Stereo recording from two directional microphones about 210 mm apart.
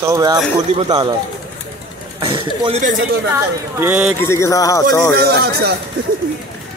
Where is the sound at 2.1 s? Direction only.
25° right (ahead or behind).